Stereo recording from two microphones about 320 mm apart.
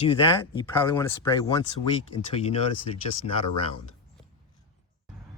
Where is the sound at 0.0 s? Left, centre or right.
Centre.